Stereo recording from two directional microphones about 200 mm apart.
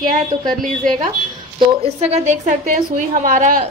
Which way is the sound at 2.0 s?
35° right (ahead or behind).